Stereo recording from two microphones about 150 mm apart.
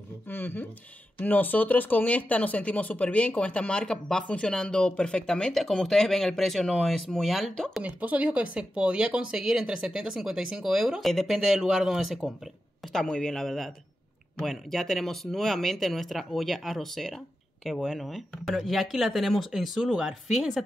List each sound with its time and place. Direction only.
0.3 s speech: 10° left (ahead or behind)
7.8 s speech: 10° right (ahead or behind)